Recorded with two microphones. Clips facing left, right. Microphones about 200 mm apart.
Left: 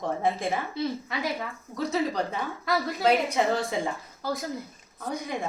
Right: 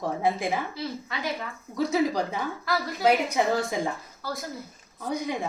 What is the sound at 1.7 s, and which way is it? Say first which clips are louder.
Speech: right 3 dB; 10° right (ahead or behind).